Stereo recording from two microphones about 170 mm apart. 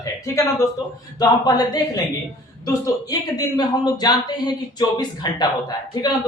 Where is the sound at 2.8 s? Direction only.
25° left (ahead or behind).